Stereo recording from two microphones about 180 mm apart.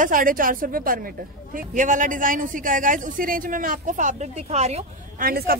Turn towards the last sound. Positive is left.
turn(degrees=-55)  # may be behind; listen again after turning